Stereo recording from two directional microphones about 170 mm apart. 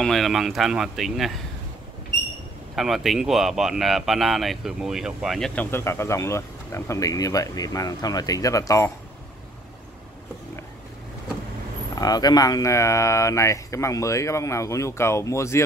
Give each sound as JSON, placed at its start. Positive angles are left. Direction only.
{"t": 0.0, "sound": "speech", "side_deg": 0}
{"t": 2.7, "sound": "speech", "side_deg": 0}
{"t": 11.9, "sound": "speech", "side_deg": 20}